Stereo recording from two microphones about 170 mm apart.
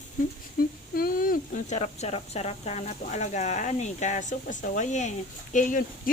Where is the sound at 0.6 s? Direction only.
60° left (ahead or behind).